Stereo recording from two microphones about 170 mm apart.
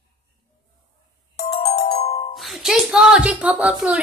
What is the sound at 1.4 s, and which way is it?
Ringtone, 65° left (ahead or behind).